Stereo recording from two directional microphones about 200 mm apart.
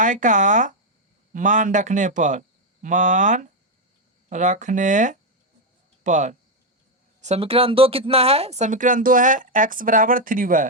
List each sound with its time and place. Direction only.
0.0 s speech: 40° right (ahead or behind)